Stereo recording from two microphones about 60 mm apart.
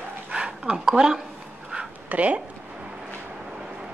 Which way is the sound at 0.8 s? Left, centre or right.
Centre.